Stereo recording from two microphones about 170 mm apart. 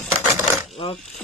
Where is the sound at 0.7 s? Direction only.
35° left (ahead or behind).